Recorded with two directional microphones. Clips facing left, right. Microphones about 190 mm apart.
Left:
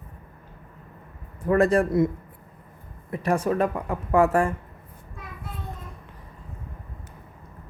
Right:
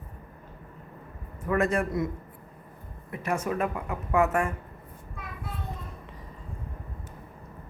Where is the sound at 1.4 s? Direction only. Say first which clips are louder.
Left 6 dB; 35° left (ahead or behind).